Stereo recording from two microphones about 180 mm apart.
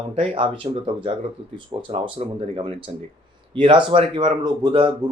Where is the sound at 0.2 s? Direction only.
30° right (ahead or behind).